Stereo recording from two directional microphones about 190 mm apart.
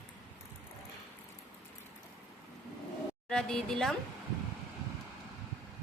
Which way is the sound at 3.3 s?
5° left (ahead or behind).